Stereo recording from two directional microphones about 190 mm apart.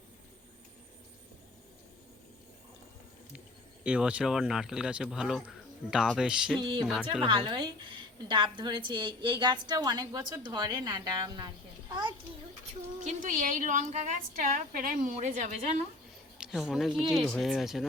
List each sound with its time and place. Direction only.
3.8 s speech: 5° right (ahead or behind)
6.6 s a woman's voice: 25° right (ahead or behind)
6.8 s speech: 5° right (ahead or behind)
7.3 s a woman's voice: 25° right (ahead or behind)
13.1 s a woman's voice: 40° right (ahead or behind)
16.4 s speech: 5° right (ahead or behind)